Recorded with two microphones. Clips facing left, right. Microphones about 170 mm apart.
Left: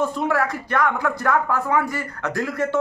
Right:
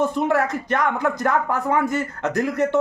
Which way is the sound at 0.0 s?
20° right (ahead or behind).